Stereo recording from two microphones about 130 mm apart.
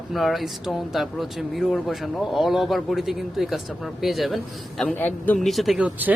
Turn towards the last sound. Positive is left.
turn(degrees=-10)  # may be behind; listen again after turning